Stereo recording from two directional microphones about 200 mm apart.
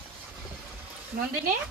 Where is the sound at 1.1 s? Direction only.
50° right (ahead or behind).